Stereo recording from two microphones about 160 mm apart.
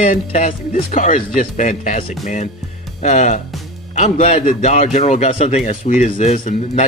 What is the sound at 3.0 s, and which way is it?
A man's voice, 50° left (ahead or behind).